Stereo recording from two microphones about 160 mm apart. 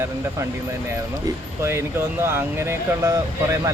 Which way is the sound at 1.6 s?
15° right (ahead or behind).